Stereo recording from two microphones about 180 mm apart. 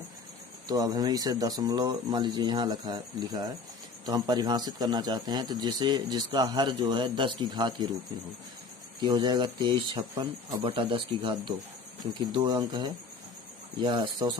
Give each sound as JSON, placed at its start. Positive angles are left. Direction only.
{"t": 0.7, "sound": "a man's voice", "side_deg": -20}
{"t": 9.0, "sound": "a man's voice", "side_deg": -25}